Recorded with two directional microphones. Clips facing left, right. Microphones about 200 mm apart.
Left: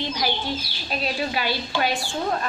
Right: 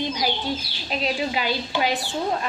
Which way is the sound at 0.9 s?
20° right (ahead or behind).